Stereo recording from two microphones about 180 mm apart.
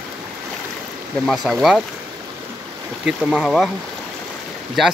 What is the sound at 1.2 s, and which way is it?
Speech, centre (ahead or behind).